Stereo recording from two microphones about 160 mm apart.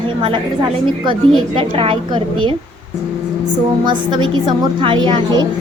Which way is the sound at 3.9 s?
30° right (ahead or behind).